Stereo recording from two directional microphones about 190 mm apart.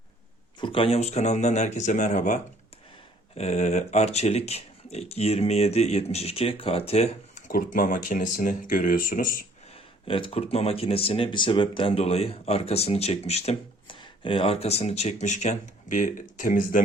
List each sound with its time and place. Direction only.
0.6 s speech: 30° left (ahead or behind); by 9.5 s 45° left (ahead or behind)
10.1 s speech: 30° left (ahead or behind); by 16.8 s 45° left (ahead or behind)